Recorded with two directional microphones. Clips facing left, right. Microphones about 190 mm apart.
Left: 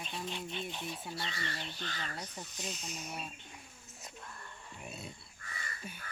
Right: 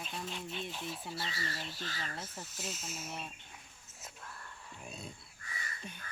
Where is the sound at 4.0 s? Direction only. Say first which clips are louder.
Left 1 dB; 5° right (ahead or behind).